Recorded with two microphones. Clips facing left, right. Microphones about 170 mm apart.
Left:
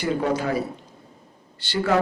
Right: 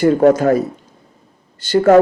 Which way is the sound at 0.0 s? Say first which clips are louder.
Right 12 dB; 45° right (ahead or behind).